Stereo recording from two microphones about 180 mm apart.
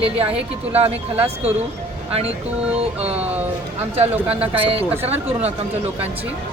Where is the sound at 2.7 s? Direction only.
35° right (ahead or behind).